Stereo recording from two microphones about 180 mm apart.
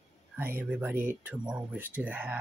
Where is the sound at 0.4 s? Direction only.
10° right (ahead or behind).